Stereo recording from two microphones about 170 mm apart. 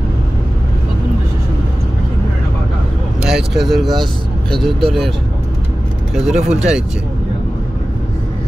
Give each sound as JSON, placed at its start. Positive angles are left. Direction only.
{"t": 3.2, "sound": "speech", "side_deg": 0}
{"t": 6.1, "sound": "speech", "side_deg": -5}